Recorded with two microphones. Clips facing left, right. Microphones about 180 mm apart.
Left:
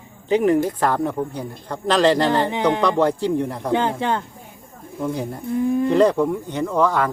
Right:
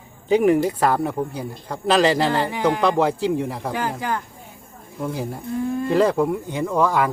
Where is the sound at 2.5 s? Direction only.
20° left (ahead or behind).